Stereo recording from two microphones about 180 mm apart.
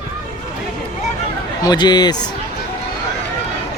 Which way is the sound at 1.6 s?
25° left (ahead or behind).